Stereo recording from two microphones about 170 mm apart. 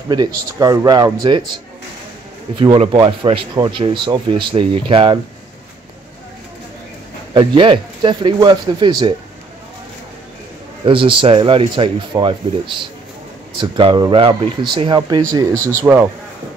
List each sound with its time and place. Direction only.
0.6 s speech: 20° right (ahead or behind)
7.3 s speech: 30° right (ahead or behind)
10.9 s speech: 30° right (ahead or behind)
15.9 s a man's voice: 5° right (ahead or behind)